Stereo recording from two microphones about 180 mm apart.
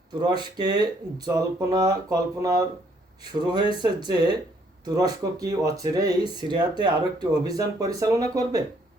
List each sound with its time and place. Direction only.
0.2 s speech: 25° right (ahead or behind)